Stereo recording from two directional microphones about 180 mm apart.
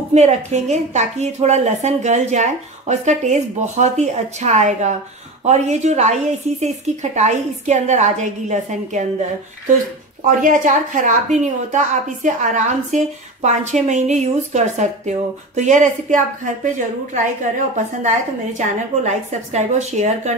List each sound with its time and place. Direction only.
0.1 s a woman's voice: 40° right (ahead or behind)
10.2 s a woman's voice: 45° right (ahead or behind)
17.7 s a woman's voice: 40° right (ahead or behind)